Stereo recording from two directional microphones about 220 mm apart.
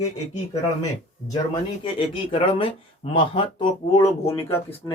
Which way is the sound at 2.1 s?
25° left (ahead or behind).